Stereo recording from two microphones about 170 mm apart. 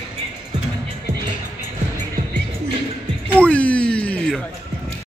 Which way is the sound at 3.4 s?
5° left (ahead or behind).